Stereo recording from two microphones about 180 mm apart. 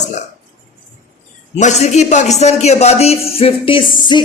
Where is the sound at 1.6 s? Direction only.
40° left (ahead or behind).